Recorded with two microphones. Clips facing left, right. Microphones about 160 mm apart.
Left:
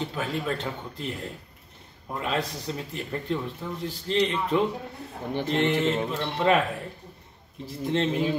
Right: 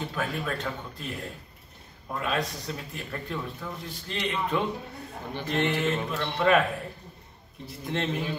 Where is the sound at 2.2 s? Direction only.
25° left (ahead or behind).